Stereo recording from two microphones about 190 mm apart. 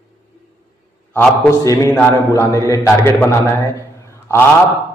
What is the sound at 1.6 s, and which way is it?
A man's voice, 15° left (ahead or behind).